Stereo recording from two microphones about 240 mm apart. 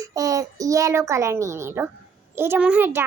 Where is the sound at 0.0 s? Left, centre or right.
Centre.